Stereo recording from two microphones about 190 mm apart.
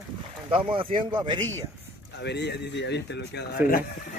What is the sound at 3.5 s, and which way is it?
Speech, 50° left (ahead or behind).